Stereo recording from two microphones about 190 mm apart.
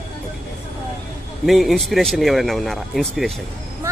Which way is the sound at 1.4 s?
Centre (ahead or behind).